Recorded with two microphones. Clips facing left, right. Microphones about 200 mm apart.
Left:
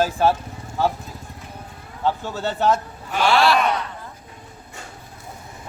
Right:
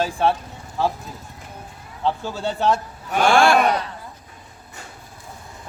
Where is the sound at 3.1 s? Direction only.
50° right (ahead or behind).